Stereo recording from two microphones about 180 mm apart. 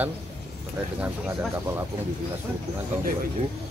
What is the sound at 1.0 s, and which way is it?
Speech, 10° right (ahead or behind).